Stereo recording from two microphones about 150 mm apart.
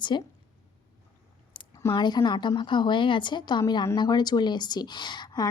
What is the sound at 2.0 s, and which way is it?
A woman's voice, 30° left (ahead or behind).